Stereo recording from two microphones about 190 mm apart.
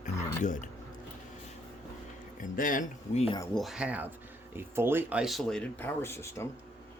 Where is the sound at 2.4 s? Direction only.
45° left (ahead or behind).